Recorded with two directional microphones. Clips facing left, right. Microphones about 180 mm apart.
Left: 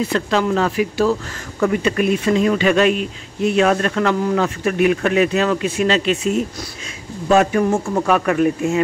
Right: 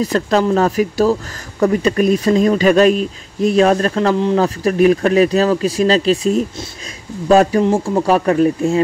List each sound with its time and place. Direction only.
0.0 s speech: 40° right (ahead or behind)
4.6 s speech: 35° right (ahead or behind)